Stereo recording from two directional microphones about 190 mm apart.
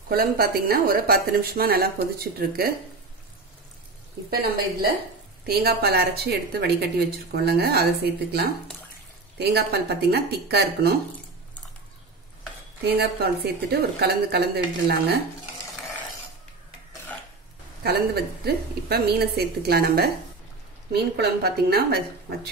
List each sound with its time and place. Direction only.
0.1 s a woman's voice: 50° right (ahead or behind)
5.4 s a woman's voice: 55° right (ahead or behind)
12.8 s a woman's voice: 55° right (ahead or behind)
17.8 s a woman's voice: 55° right (ahead or behind)